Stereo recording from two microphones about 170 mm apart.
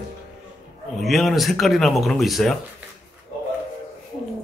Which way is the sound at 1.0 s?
Centre (ahead or behind).